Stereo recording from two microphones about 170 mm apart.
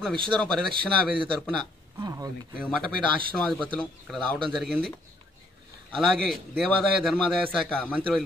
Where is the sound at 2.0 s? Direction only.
20° right (ahead or behind).